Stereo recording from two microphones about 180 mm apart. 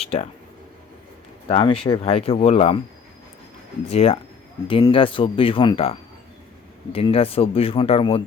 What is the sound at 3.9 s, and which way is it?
Speech, 35° left (ahead or behind).